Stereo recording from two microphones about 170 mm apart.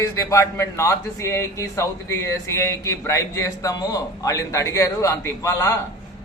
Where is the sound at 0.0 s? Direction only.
15° left (ahead or behind).